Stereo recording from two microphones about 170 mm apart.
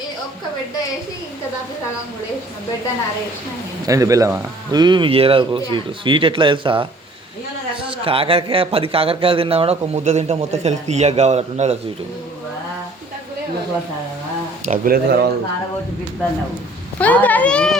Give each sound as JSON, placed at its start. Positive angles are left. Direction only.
{"t": 3.8, "sound": "a man's voice", "side_deg": -20}
{"t": 7.9, "sound": "a man's voice", "side_deg": -35}
{"t": 14.7, "sound": "speech", "side_deg": -60}
{"t": 17.0, "sound": "speech", "side_deg": 10}